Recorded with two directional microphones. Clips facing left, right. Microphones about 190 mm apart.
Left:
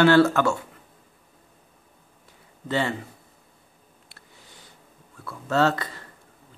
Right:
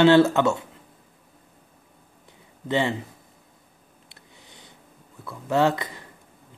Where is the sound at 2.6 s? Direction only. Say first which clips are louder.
Right 2 dB; 20° right (ahead or behind).